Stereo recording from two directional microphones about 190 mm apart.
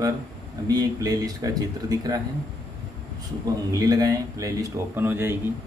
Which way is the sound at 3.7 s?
20° right (ahead or behind).